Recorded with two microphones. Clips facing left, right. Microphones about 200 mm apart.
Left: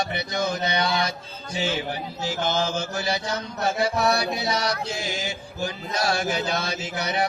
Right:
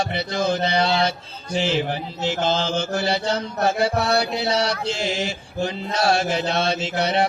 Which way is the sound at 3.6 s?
60° right (ahead or behind).